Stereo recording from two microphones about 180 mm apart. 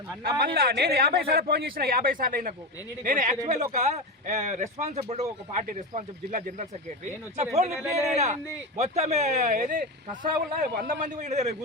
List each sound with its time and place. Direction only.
0.2 s speech: 60° right (ahead or behind); by 11.5 s 40° right (ahead or behind)